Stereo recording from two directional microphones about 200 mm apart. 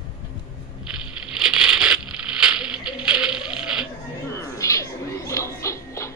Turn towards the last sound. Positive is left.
turn(degrees=15)  # may be behind; listen again after turning